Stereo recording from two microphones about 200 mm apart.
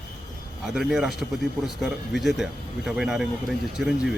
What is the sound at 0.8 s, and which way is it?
Speech, centre (ahead or behind).